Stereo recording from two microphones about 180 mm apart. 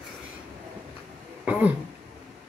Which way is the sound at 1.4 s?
10° right (ahead or behind).